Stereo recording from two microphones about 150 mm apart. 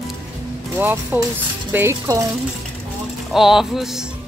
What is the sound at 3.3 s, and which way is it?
Speech, centre (ahead or behind).